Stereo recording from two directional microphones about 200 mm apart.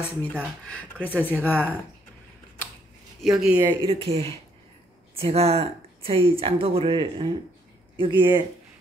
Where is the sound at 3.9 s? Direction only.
30° right (ahead or behind).